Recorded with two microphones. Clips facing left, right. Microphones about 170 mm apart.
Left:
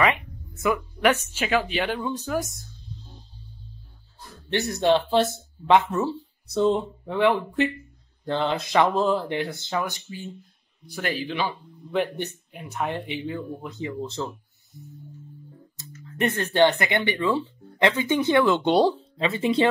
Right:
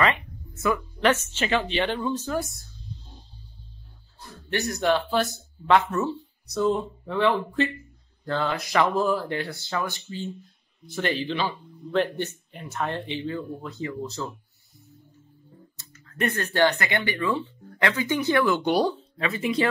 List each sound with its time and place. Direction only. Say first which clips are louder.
0.0 s speech: left 1 dB; 15° left (ahead or behind)
4.5 s speech: left 3 dB; 25° left (ahead or behind)
16.2 s speech: left 3 dB; 25° left (ahead or behind)